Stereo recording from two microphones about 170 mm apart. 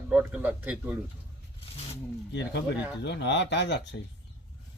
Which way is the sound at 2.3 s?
90° left.